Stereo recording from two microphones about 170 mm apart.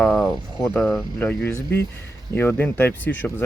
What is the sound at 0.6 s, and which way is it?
Speech, 10° left (ahead or behind).